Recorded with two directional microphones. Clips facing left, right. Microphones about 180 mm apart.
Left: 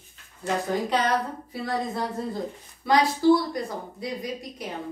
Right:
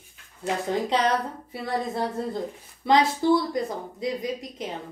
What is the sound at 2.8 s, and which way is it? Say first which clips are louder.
Speech: even; 20° right (ahead or behind).